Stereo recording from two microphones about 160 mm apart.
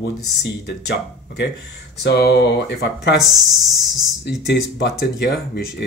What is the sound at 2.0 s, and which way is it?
Speech, 90° left.